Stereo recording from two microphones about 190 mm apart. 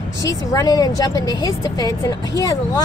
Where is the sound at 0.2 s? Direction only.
20° left (ahead or behind).